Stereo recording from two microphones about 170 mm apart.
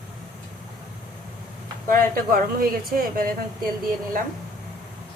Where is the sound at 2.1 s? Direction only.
55° right (ahead or behind).